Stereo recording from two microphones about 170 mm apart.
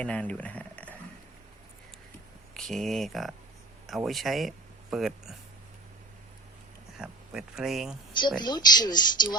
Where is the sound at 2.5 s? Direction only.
Centre (ahead or behind).